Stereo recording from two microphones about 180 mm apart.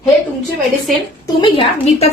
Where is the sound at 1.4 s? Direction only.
35° left (ahead or behind).